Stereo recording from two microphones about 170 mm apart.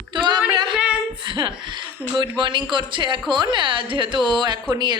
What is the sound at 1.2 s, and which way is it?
Speech, 30° right (ahead or behind).